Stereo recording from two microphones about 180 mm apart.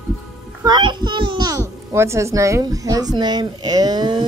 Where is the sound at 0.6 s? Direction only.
25° right (ahead or behind).